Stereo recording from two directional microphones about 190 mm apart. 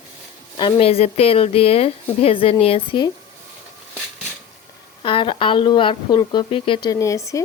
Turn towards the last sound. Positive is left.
turn(degrees=15)  # may be behind; listen again after turning